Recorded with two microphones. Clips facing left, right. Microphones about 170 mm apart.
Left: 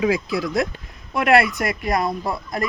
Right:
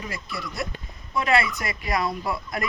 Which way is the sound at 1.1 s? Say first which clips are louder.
Left 6 dB; 70° left (ahead or behind).